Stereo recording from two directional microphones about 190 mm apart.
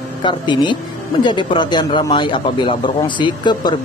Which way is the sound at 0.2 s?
25° left (ahead or behind).